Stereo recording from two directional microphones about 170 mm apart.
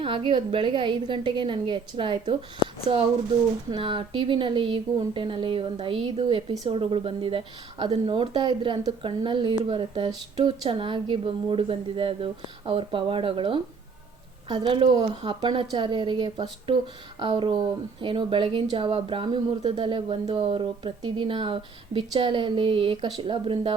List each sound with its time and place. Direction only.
0.0 s speech: 30° right (ahead or behind)